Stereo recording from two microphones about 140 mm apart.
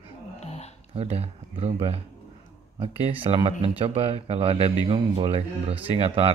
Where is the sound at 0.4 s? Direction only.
50° left (ahead or behind).